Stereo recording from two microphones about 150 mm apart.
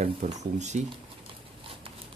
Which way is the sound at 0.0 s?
50° right (ahead or behind).